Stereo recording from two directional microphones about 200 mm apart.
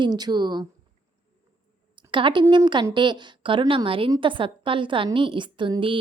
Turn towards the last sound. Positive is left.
turn(degrees=-25)  # may be behind; listen again after turning